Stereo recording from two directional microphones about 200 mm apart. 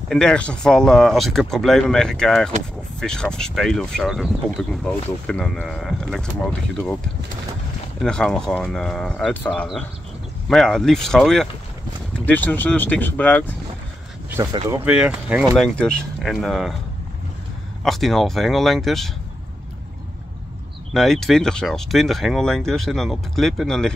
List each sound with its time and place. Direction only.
0.1 s speech: 5° left (ahead or behind)
8.0 s speech: 5° left (ahead or behind)
14.3 s speech: 15° right (ahead or behind)
14.9 s speech: 5° right (ahead or behind)
17.8 s speech: centre (ahead or behind)
20.9 s speech: centre (ahead or behind)